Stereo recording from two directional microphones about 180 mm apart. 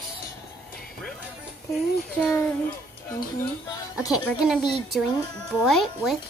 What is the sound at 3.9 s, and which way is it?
Speech, 5° right (ahead or behind).